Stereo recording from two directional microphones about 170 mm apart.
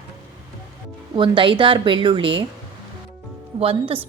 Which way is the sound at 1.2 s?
30° right (ahead or behind).